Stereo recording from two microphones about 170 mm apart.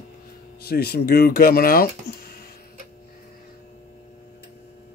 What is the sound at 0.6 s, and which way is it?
Speech, 65° left (ahead or behind).